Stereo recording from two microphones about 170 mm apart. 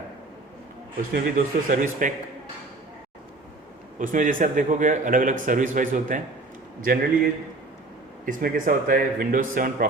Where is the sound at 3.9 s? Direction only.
50° right (ahead or behind).